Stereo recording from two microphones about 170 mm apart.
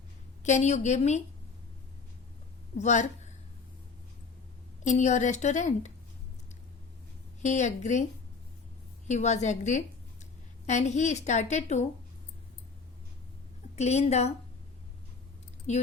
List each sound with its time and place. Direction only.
0.4 s a woman's voice: 45° left (ahead or behind)
2.7 s a woman's voice: 45° left (ahead or behind)
4.8 s a woman's voice: 45° left (ahead or behind)
7.4 s a woman's voice: 45° left (ahead or behind)
9.0 s a woman's voice: 45° left (ahead or behind)
13.7 s a woman's voice: 40° left (ahead or behind)
15.7 s a woman's voice: 40° left (ahead or behind)